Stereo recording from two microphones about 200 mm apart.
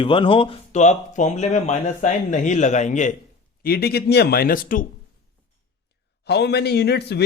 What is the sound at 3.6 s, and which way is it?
A man's voice, 50° left (ahead or behind).